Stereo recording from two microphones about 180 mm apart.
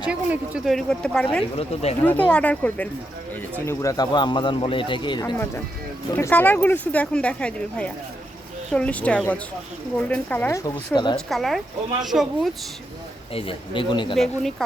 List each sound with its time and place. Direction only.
0.0 s a woman's voice: 5° right (ahead or behind)
1.5 s speech: 35° left (ahead or behind)
2.0 s speech: 10° left (ahead or behind); by 5.3 s 25° left (ahead or behind)
6.1 s speech: 10° left (ahead or behind)
11.3 s a woman's voice: centre (ahead or behind)
13.3 s speech: 30° left (ahead or behind)